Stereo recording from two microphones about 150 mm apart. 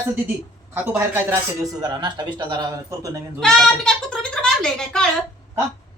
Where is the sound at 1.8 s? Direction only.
30° right (ahead or behind).